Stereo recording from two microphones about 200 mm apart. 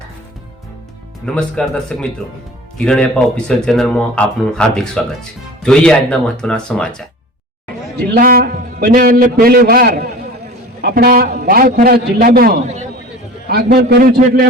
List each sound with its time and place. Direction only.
1.2 s speech: 5° left (ahead or behind)
8.1 s a man's voice: 50° right (ahead or behind)